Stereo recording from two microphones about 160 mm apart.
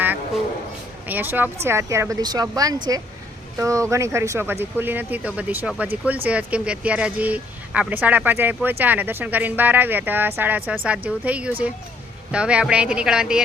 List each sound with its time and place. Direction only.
1.0 s a woman's voice: 10° right (ahead or behind)